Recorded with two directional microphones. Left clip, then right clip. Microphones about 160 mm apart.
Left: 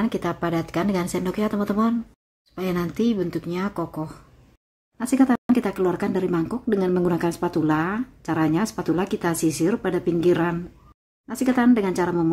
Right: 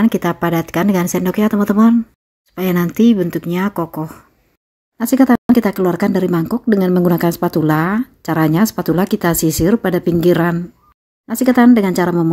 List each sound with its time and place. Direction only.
0.0 s speech: 45° right (ahead or behind)